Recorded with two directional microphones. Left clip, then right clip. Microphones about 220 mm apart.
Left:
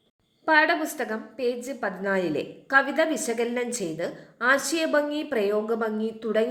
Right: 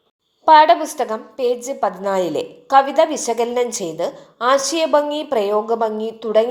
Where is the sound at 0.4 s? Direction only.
5° right (ahead or behind).